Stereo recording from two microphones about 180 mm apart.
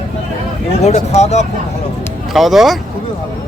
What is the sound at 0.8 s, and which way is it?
Speech, 40° left (ahead or behind).